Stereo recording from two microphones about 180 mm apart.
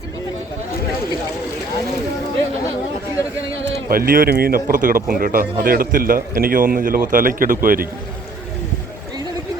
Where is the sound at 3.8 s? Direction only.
55° right (ahead or behind).